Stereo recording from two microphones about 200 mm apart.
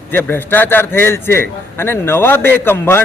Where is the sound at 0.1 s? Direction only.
10° left (ahead or behind).